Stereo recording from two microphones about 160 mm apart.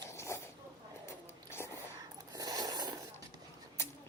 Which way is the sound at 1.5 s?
15° left (ahead or behind).